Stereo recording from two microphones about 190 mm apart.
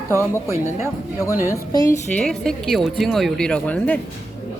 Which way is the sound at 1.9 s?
5° left (ahead or behind).